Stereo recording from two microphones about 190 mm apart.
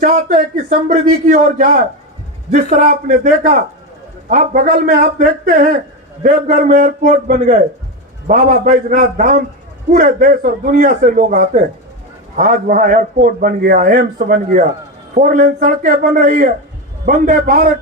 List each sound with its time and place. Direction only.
0.0 s a man's voice: 45° right (ahead or behind)